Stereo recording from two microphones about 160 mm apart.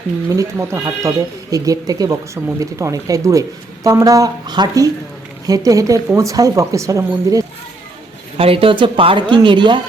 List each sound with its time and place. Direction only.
0.3 s speech: 20° right (ahead or behind)
8.4 s speech: 35° right (ahead or behind)